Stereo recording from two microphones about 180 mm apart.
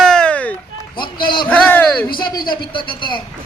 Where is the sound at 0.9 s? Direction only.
25° left (ahead or behind).